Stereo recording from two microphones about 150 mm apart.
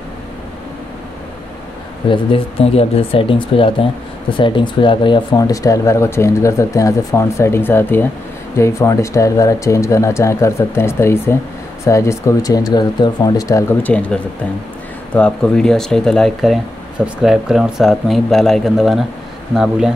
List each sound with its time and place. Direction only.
2.0 s speech: 40° left (ahead or behind); by 19.9 s 5° right (ahead or behind)